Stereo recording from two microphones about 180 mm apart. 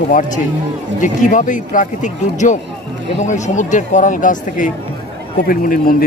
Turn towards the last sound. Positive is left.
turn(degrees=50)  # may be behind; listen again after turning